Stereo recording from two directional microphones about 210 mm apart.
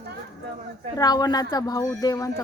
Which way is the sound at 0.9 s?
20° left (ahead or behind).